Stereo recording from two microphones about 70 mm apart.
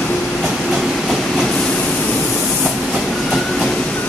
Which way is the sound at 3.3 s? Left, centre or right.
Centre.